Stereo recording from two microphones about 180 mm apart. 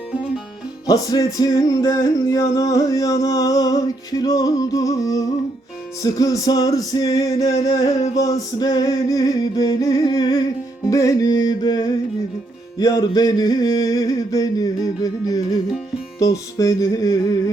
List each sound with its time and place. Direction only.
0.9 s music: 20° left (ahead or behind)